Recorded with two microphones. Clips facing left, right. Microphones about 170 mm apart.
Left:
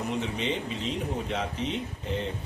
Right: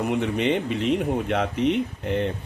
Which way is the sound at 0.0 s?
60° right (ahead or behind).